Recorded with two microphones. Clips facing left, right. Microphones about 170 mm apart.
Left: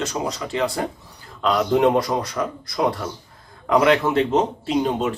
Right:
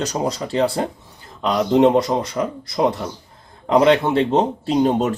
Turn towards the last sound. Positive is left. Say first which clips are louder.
# right 4 dB
turn(degrees=-40)  # may be behind; listen again after turning